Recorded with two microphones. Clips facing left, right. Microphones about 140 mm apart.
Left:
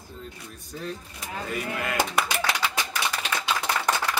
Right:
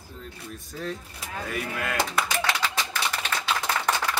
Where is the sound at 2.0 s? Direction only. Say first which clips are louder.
Left 1 dB; 10° left (ahead or behind).